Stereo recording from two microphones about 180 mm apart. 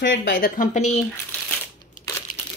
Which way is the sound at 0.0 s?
90° left.